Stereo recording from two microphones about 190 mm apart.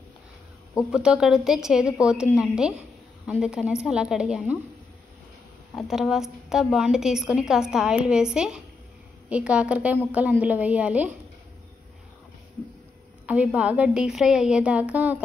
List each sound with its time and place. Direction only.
0.9 s a woman's voice: 5° right (ahead or behind)
5.8 s a woman's voice: centre (ahead or behind)
13.3 s a woman's voice: 5° right (ahead or behind)